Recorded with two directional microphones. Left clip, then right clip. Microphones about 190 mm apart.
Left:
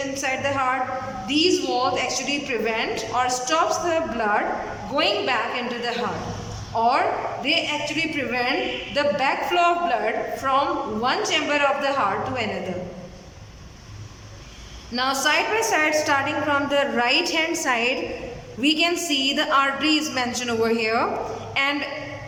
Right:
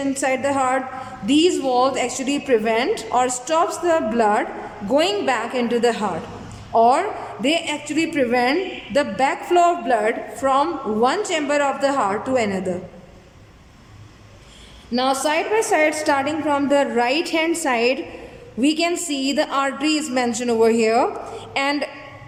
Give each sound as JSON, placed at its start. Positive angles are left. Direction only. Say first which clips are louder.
{"t": 0.2, "sound": "a woman's voice", "louder": "right 4 dB", "side_deg": -35}
{"t": 14.9, "sound": "a woman's voice", "louder": "right 1 dB", "side_deg": -25}